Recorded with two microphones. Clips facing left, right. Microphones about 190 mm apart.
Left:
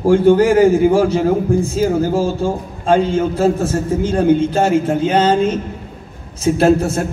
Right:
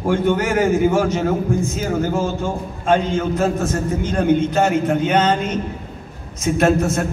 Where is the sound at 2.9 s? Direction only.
30° left (ahead or behind).